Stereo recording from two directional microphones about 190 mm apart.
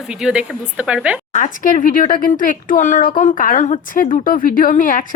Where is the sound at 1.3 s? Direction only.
40° left (ahead or behind).